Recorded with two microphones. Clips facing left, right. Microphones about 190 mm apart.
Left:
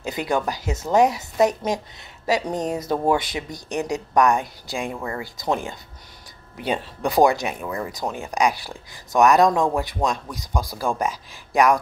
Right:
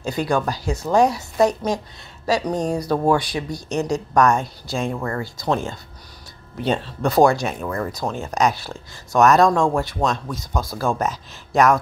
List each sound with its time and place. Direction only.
0.0 s a woman's voice: 20° left (ahead or behind)